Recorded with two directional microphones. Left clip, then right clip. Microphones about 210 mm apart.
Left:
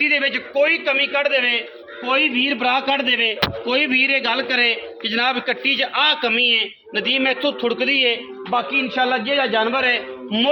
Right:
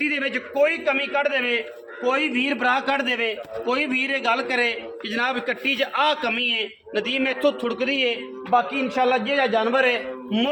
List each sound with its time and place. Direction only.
0.0 s a man's voice: 45° left (ahead or behind)
2.0 s a man's voice: 20° left (ahead or behind)